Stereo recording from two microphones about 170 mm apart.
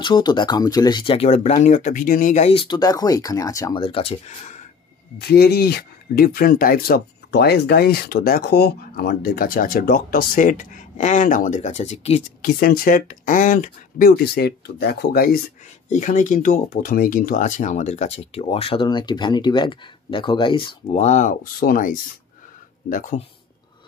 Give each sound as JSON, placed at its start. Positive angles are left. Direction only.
{"t": 0.0, "sound": "speech", "side_deg": 25}
{"t": 3.8, "sound": "speech", "side_deg": 35}
{"t": 4.3, "sound": "speech", "side_deg": 45}
{"t": 5.2, "sound": "speech", "side_deg": 65}
{"t": 12.4, "sound": "speech", "side_deg": 60}
{"t": 15.9, "sound": "speech", "side_deg": 45}